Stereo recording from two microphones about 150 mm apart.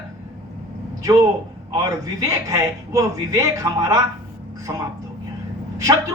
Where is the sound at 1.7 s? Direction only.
25° right (ahead or behind).